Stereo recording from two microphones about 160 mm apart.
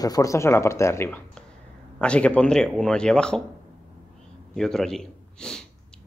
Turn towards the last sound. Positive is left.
turn(degrees=5)  # may be behind; listen again after turning